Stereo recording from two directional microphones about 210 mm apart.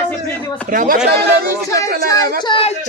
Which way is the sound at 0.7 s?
40° right (ahead or behind).